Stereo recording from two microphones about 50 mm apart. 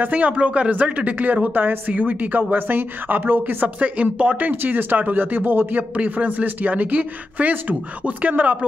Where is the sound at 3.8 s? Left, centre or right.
Right.